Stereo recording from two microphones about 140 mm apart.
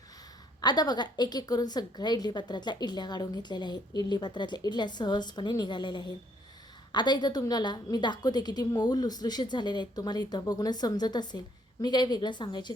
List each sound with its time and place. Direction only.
0.6 s a woman's voice: 30° left (ahead or behind)